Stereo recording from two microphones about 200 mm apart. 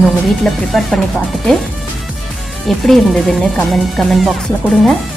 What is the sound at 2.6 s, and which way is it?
Speech, centre (ahead or behind).